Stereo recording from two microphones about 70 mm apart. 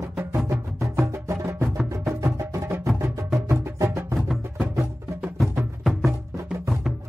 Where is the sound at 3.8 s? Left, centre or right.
Right.